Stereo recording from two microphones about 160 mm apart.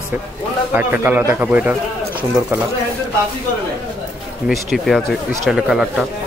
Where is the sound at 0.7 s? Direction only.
10° right (ahead or behind).